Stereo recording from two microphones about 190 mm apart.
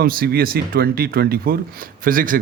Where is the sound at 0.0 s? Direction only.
50° right (ahead or behind).